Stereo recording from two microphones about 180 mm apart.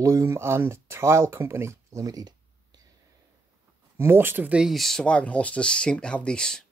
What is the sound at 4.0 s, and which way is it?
Speech, 10° right (ahead or behind).